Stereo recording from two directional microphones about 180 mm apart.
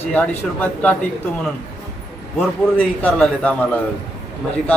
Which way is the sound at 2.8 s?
10° left (ahead or behind).